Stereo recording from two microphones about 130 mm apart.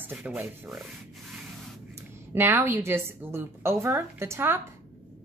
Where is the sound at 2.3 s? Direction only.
15° right (ahead or behind).